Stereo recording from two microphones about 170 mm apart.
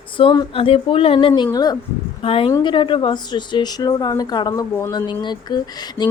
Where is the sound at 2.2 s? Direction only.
35° left (ahead or behind).